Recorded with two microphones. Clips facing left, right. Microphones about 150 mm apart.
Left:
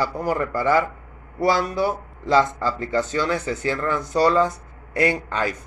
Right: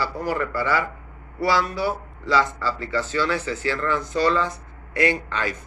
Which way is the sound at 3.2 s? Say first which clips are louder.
Left 1 dB; 15° left (ahead or behind).